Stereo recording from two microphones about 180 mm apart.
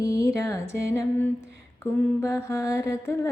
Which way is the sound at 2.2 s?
20° left (ahead or behind).